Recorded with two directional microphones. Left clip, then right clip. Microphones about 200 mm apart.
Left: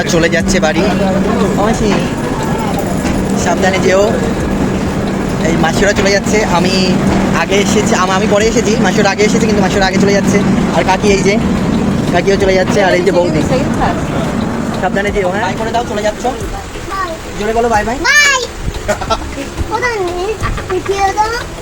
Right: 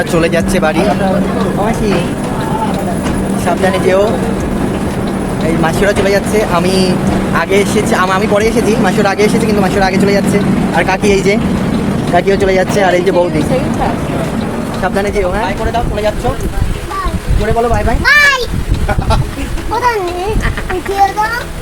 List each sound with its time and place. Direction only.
0.1 s speech: 15° right (ahead or behind)
3.4 s speech: 20° right (ahead or behind)
5.6 s speech: 15° right (ahead or behind)
14.9 s speech: 15° right (ahead or behind)
18.0 s a sound: 10° right (ahead or behind)